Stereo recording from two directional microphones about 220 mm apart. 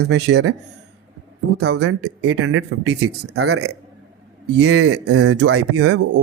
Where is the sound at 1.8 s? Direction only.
75° right (ahead or behind).